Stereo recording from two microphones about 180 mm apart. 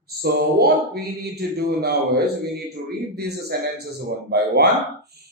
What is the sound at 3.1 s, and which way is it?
A man's voice, 65° right (ahead or behind).